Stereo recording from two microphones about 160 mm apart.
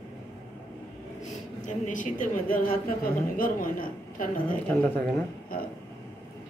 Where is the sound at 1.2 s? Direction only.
50° left (ahead or behind).